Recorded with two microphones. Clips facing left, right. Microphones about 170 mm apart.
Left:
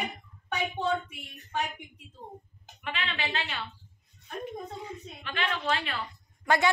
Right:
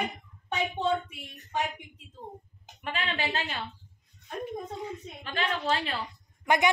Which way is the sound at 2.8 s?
40° right (ahead or behind).